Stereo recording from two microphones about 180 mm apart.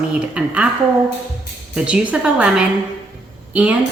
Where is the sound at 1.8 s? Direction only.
5° right (ahead or behind).